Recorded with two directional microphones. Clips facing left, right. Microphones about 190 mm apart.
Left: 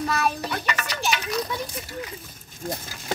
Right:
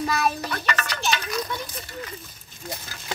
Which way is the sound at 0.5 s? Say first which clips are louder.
Even; 15° left (ahead or behind).